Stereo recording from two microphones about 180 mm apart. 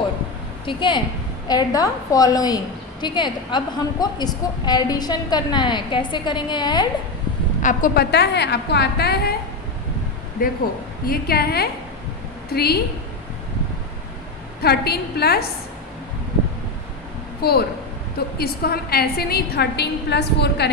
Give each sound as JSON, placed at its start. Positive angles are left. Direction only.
{"t": 0.7, "sound": "a woman's voice", "side_deg": 25}
{"t": 7.6, "sound": "a woman's voice", "side_deg": 55}
{"t": 10.4, "sound": "a woman's voice", "side_deg": 50}
{"t": 14.6, "sound": "a woman's voice", "side_deg": 60}
{"t": 17.4, "sound": "a woman's voice", "side_deg": 60}